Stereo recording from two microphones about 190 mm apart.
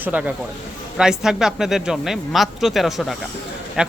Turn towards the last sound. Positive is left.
turn(degrees=-5)  # may be behind; listen again after turning